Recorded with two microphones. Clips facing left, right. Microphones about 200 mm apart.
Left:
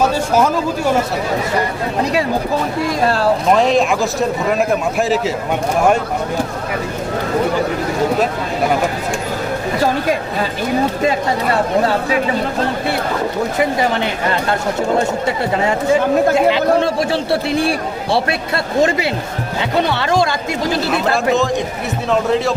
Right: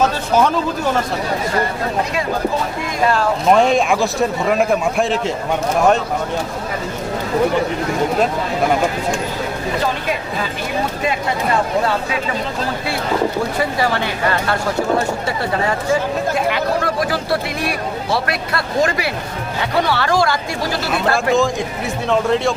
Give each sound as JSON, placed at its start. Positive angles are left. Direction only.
{"t": 0.0, "sound": "speech", "side_deg": 10}
{"t": 3.5, "sound": "a man's voice", "side_deg": 0}
{"t": 13.6, "sound": "speech", "side_deg": 20}
{"t": 15.5, "sound": "speech", "side_deg": 20}
{"t": 22.1, "sound": "a man's voice", "side_deg": 0}